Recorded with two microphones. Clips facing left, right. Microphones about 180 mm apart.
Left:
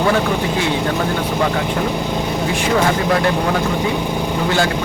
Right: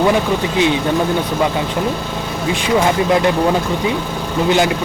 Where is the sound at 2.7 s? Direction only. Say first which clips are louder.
Right 3 dB; 20° right (ahead or behind).